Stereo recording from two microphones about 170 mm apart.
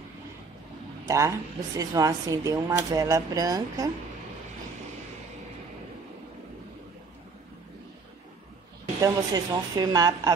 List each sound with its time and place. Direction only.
1.0 s a man's voice: 20° right (ahead or behind)
9.0 s speech: 20° right (ahead or behind)